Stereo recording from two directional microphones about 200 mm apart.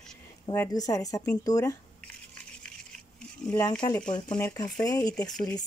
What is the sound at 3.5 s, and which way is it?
Speech, 15° left (ahead or behind).